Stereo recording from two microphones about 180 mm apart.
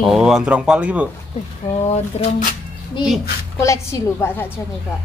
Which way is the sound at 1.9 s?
35° left (ahead or behind).